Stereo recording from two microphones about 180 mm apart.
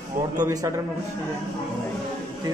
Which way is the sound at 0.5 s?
20° right (ahead or behind).